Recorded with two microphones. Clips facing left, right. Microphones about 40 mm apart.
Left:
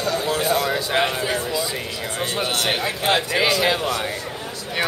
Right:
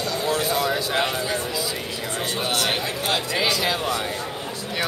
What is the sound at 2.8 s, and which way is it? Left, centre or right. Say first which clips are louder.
Speech: left 4 dB; left.